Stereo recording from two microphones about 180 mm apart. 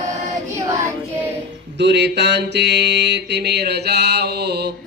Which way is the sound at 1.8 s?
70° right (ahead or behind).